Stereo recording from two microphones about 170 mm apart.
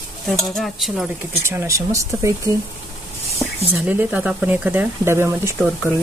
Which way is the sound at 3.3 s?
5° right (ahead or behind).